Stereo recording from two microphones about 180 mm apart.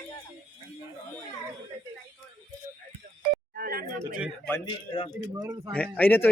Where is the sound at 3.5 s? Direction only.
55° right (ahead or behind).